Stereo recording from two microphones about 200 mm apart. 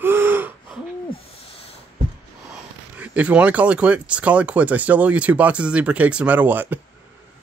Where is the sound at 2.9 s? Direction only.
10° right (ahead or behind).